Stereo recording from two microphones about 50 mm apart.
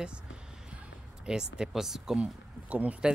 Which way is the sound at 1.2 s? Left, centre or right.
Centre.